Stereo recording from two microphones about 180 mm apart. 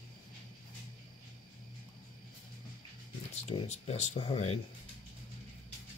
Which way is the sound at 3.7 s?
40° left (ahead or behind).